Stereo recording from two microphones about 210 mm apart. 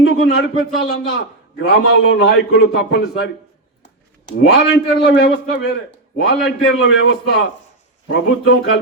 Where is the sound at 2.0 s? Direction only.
55° left (ahead or behind).